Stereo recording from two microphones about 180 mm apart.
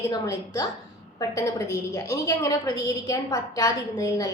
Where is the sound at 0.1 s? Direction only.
20° left (ahead or behind).